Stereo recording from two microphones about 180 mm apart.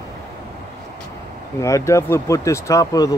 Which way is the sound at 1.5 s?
15° left (ahead or behind).